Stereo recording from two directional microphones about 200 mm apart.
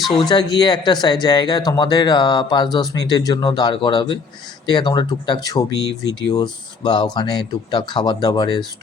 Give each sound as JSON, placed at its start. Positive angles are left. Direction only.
{"t": 0.1, "sound": "speech", "side_deg": 25}